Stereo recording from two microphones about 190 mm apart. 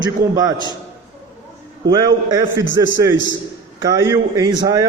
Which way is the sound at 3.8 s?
20° right (ahead or behind).